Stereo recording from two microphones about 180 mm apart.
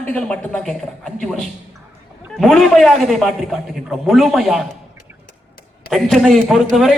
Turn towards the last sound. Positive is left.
turn(degrees=0)  # may be behind; listen again after turning